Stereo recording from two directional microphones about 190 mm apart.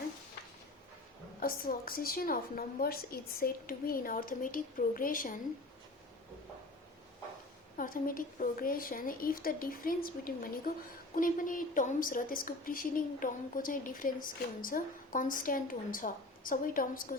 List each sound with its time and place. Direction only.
1.4 s a woman's voice: 50° left (ahead or behind)
7.8 s a woman's voice: 45° left (ahead or behind)